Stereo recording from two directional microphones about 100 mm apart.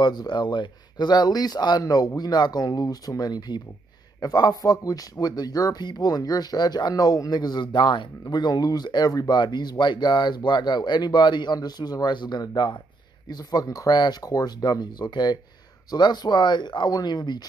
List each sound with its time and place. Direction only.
0.0 s speech: 45° left (ahead or behind)